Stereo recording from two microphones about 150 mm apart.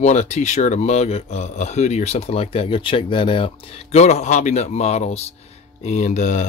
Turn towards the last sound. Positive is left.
turn(degrees=55)  # may be behind; listen again after turning